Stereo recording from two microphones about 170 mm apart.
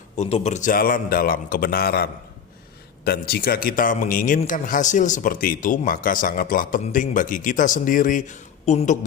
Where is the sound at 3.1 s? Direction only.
65° left (ahead or behind).